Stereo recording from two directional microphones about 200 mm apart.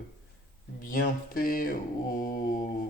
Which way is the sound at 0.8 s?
45° left (ahead or behind).